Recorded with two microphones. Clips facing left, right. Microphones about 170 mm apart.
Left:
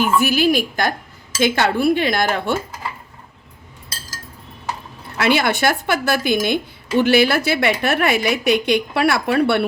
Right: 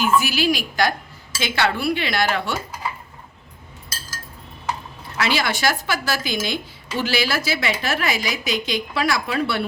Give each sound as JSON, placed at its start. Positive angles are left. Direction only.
{"t": 0.0, "sound": "speech", "side_deg": 55}
{"t": 5.1, "sound": "speech", "side_deg": 55}